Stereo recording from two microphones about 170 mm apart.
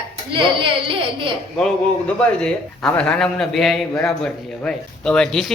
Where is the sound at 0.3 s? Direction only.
30° right (ahead or behind).